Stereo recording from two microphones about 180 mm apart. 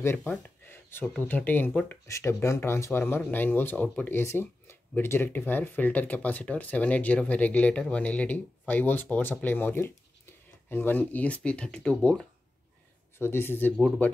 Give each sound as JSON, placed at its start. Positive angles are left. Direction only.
{"t": 0.0, "sound": "speech", "side_deg": 10}